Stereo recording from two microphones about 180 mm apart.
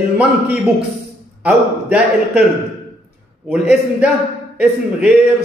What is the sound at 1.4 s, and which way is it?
A man's voice, 5° right (ahead or behind).